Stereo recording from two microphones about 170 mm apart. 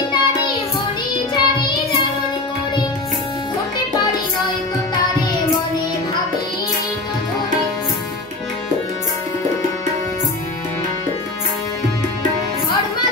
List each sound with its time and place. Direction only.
0.1 s child singing: 25° left (ahead or behind)